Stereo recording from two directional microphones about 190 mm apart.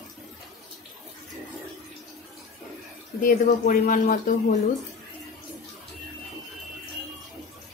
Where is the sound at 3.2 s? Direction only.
45° left (ahead or behind).